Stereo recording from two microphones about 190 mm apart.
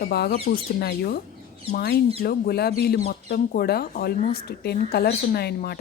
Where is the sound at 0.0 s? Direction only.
55° left (ahead or behind).